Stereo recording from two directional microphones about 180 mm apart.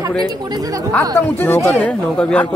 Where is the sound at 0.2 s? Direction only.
20° right (ahead or behind).